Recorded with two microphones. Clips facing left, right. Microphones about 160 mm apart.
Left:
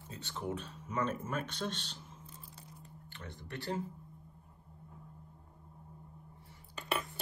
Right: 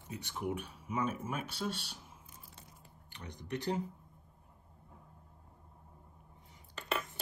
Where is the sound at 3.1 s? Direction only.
15° right (ahead or behind).